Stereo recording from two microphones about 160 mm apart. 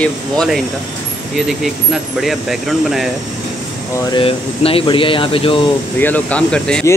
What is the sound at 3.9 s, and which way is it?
Speech, 25° left (ahead or behind).